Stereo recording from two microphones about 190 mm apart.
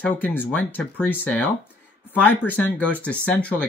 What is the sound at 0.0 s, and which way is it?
Speech, 10° left (ahead or behind).